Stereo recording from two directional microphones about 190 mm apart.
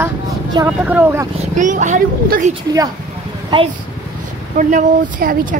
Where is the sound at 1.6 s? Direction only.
40° right (ahead or behind).